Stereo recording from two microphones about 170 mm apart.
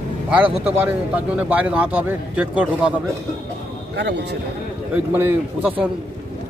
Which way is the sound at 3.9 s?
80° right.